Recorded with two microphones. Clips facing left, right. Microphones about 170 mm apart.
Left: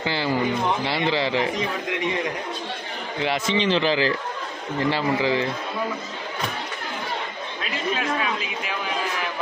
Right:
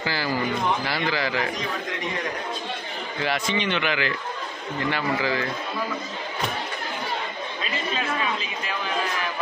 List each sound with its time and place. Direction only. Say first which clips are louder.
0.0 s a man's voice: left 3 dB; 25° left (ahead or behind)
3.2 s a man's voice: left 3 dB; 25° left (ahead or behind)
7.6 s a sound: left 3 dB; 5° left (ahead or behind)